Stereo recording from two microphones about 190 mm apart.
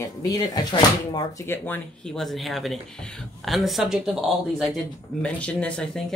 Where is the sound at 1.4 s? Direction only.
10° left (ahead or behind).